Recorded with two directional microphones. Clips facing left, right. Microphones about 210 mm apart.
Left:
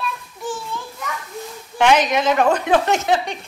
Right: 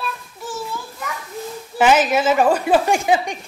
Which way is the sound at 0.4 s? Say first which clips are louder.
Left 1 dB; centre (ahead or behind).